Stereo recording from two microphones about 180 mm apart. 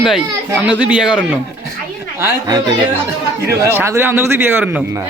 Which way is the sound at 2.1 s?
15° right (ahead or behind).